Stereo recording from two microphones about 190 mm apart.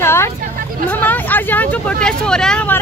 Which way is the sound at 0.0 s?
15° left (ahead or behind).